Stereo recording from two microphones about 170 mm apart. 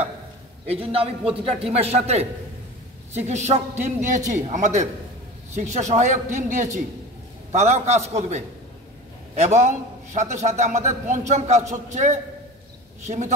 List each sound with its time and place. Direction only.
0.7 s a man's voice: 35° right (ahead or behind)